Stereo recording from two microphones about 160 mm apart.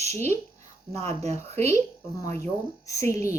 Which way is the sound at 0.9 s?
40° right (ahead or behind).